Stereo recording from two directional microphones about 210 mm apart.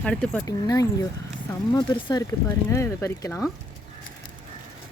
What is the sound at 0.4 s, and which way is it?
Speech, 15° left (ahead or behind).